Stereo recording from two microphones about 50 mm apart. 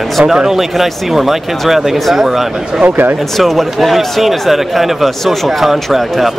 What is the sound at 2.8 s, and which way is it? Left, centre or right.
Speech, right.